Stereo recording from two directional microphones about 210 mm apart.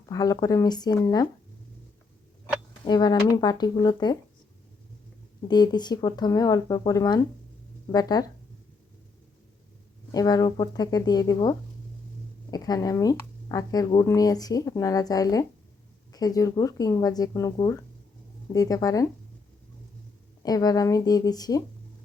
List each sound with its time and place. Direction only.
0.1 s speech: 15° left (ahead or behind)
2.8 s speech: 20° left (ahead or behind)
5.5 s speech: 20° left (ahead or behind)
10.1 s speech: 15° left (ahead or behind)
20.4 s speech: 20° left (ahead or behind)